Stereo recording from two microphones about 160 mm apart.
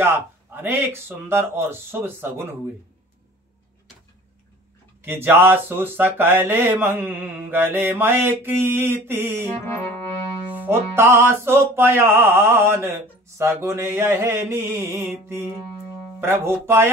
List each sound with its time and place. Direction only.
0.0 s music: 15° right (ahead or behind)
5.0 s music: 15° right (ahead or behind)
9.5 s music: 15° left (ahead or behind)
10.5 s music: 10° right (ahead or behind)